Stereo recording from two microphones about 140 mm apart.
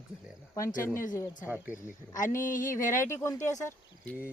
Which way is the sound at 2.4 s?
70° left (ahead or behind).